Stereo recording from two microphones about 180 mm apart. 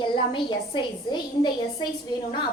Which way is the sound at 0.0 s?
25° left (ahead or behind).